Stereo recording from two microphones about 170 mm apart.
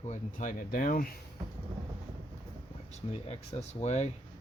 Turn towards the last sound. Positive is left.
turn(degrees=40)  # may be behind; listen again after turning